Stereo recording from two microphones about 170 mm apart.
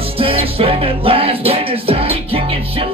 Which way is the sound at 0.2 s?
35° right (ahead or behind).